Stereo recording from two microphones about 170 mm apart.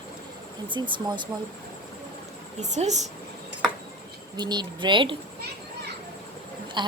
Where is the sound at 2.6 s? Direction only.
45° right (ahead or behind).